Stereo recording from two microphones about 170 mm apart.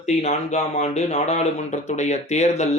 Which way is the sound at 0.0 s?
40° left (ahead or behind).